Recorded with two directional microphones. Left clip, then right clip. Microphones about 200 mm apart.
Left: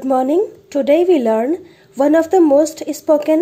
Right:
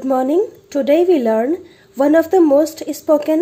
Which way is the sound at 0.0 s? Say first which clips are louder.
Left 1 dB; centre (ahead or behind).